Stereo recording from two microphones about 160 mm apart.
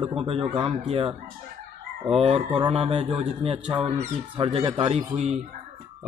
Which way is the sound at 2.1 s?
35° right (ahead or behind).